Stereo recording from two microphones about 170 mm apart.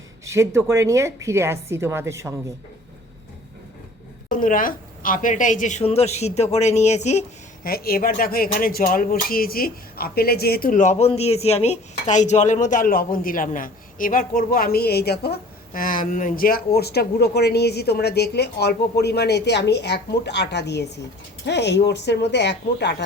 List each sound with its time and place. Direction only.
0.3 s a woman's voice: 15° right (ahead or behind)
4.3 s a woman's voice: 50° left (ahead or behind)
7.6 s speech: 60° left (ahead or behind); by 23.0 s 90° left